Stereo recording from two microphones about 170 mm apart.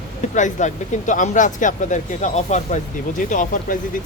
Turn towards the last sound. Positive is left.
turn(degrees=50)  # may be behind; listen again after turning